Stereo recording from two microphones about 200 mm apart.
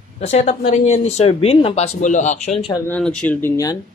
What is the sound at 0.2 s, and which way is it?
Speech, 35° left (ahead or behind).